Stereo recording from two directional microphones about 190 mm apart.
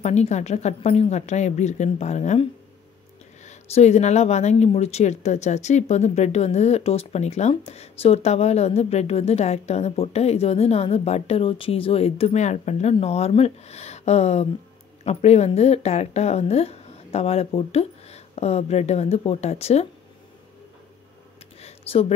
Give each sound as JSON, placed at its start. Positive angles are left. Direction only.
{"t": 0.0, "sound": "speech", "side_deg": 35}
{"t": 3.4, "sound": "speech", "side_deg": 35}
{"t": 21.5, "sound": "a sound", "side_deg": 35}